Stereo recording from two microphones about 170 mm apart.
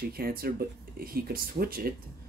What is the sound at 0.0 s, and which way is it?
Speech, 65° right (ahead or behind).